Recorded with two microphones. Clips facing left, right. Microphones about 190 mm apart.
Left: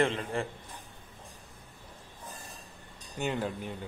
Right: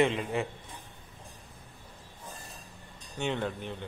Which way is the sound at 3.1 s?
5° left (ahead or behind).